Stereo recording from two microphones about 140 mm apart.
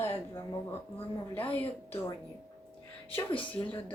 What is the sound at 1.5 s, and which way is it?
Speech, 10° left (ahead or behind).